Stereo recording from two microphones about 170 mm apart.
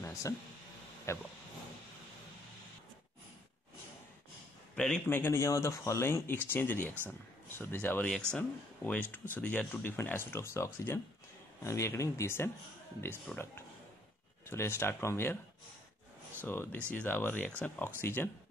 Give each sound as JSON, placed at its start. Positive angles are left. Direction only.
{"t": 1.1, "sound": "speech", "side_deg": 15}
{"t": 4.7, "sound": "speech", "side_deg": 5}
{"t": 16.4, "sound": "speech", "side_deg": 10}